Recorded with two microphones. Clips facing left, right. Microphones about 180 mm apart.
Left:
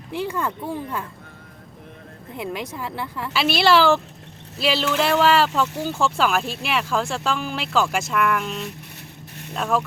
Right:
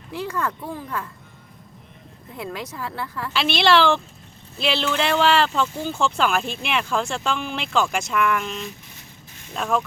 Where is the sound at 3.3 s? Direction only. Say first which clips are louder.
Left 1 dB; 5° left (ahead or behind).